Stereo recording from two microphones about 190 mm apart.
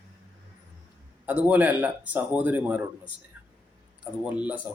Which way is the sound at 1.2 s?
10° right (ahead or behind).